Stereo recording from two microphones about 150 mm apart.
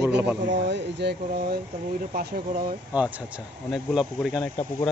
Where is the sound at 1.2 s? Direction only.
85° right.